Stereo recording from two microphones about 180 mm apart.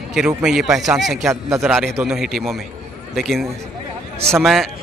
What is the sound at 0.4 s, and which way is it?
A man's voice, 5° right (ahead or behind).